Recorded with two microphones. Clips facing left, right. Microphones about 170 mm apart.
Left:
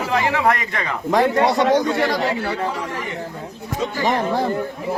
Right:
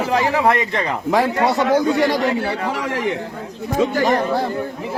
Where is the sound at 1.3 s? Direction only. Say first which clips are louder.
Even; 30° left (ahead or behind).